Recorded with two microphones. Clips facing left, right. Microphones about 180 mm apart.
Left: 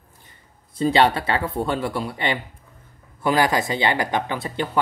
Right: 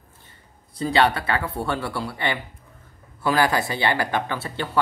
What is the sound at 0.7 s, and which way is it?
Speech, 25° left (ahead or behind).